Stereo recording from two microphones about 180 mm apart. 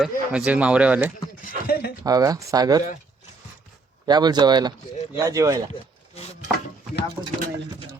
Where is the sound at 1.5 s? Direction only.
60° left (ahead or behind).